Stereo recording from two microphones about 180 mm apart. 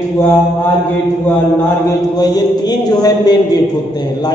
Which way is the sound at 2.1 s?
20° left (ahead or behind).